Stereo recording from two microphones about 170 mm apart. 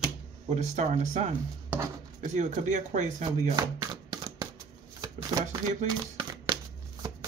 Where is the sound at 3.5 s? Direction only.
20° right (ahead or behind).